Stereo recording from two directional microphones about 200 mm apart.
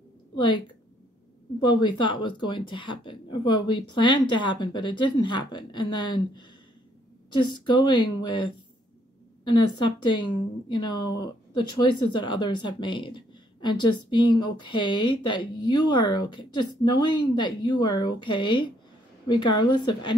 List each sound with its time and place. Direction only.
1.6 s speech: 25° left (ahead or behind)